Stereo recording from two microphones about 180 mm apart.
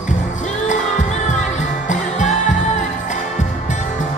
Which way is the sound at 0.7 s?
40° left (ahead or behind).